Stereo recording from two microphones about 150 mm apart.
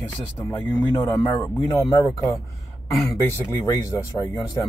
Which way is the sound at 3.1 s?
15° left (ahead or behind).